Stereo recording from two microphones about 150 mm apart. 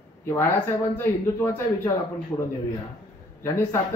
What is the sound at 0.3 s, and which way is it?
A man's voice, 15° left (ahead or behind).